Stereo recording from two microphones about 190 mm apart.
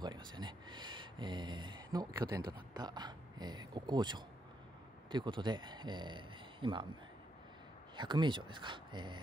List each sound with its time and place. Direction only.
0.0 s a sound: 25° right (ahead or behind)
5.1 s speech: 25° right (ahead or behind)
7.9 s speech: 25° right (ahead or behind)